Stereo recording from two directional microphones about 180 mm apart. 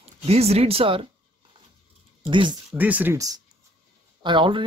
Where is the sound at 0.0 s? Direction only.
35° right (ahead or behind).